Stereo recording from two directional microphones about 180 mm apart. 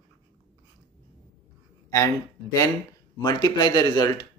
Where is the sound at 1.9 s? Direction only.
15° left (ahead or behind).